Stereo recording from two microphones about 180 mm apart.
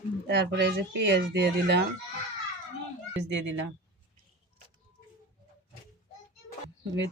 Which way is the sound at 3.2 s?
80° right.